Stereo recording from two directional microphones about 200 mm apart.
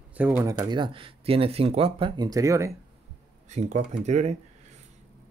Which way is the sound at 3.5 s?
35° right (ahead or behind).